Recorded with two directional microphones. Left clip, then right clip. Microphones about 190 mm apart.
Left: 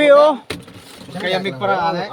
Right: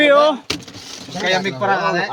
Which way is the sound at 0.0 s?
25° left (ahead or behind).